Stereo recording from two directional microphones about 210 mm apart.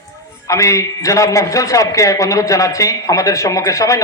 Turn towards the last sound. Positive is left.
turn(degrees=15)  # may be behind; listen again after turning